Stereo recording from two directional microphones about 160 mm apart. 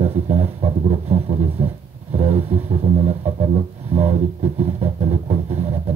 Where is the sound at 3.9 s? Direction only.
40° right (ahead or behind).